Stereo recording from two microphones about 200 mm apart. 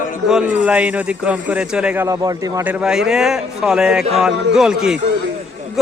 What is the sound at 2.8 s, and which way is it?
Speech, 5° right (ahead or behind).